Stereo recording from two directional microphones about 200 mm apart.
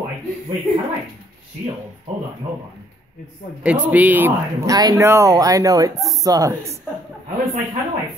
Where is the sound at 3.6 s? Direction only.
5° right (ahead or behind).